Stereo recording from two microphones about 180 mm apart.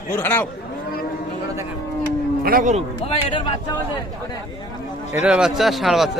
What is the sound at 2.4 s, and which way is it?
Speech, 50° right (ahead or behind).